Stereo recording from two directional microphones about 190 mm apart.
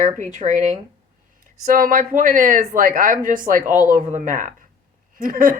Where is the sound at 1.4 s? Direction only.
45° right (ahead or behind).